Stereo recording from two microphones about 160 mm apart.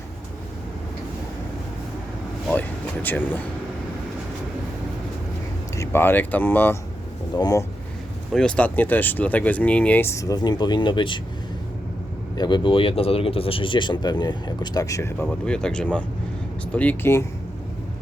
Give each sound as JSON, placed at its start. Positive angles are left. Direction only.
{"t": 2.5, "sound": "vehicle", "side_deg": 10}
{"t": 5.7, "sound": "speech", "side_deg": 15}
{"t": 7.3, "sound": "speech", "side_deg": 25}
{"t": 8.3, "sound": "speech", "side_deg": 5}
{"t": 12.4, "sound": "speech", "side_deg": 30}
{"t": 15.3, "sound": "speech", "side_deg": 5}